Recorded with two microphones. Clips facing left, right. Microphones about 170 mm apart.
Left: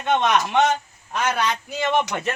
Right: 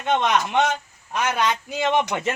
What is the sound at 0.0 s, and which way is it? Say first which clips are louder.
A man's voice: left 1 dB; 15° right (ahead or behind).